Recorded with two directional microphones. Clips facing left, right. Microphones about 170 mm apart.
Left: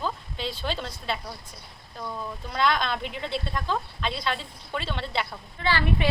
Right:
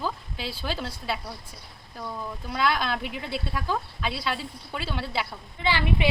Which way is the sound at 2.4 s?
5° right (ahead or behind).